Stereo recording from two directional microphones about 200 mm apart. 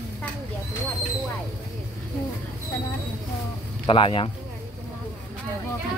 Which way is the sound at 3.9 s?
25° left (ahead or behind).